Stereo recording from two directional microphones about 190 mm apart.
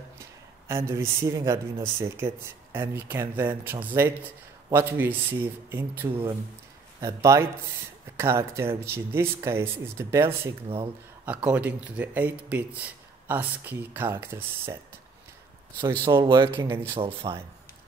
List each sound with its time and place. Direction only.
0.7 s speech: 15° right (ahead or behind)
15.8 s speech: 25° right (ahead or behind)
16.9 s speech: 30° right (ahead or behind)